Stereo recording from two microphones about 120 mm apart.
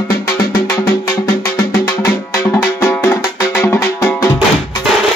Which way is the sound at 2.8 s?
15° left (ahead or behind).